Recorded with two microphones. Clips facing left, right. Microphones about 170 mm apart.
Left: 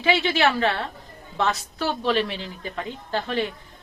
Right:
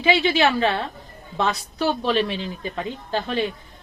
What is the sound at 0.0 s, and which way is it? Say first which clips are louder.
Speech: right 2 dB; 15° right (ahead or behind).